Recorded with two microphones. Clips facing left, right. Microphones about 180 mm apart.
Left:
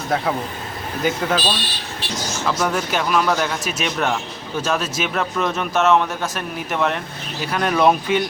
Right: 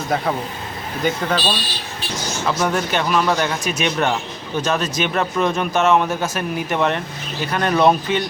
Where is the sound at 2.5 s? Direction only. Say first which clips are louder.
Right 1 dB; centre (ahead or behind).